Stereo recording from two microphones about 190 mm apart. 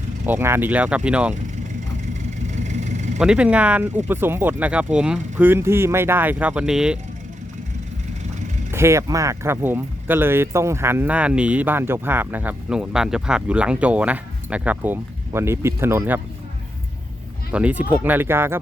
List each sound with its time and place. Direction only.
0.3 s speech: 10° right (ahead or behind)
2.6 s vehicle: 40° right (ahead or behind)
3.2 s speech: 5° right (ahead or behind)
8.7 s speech: 15° right (ahead or behind)
17.5 s speech: 5° right (ahead or behind)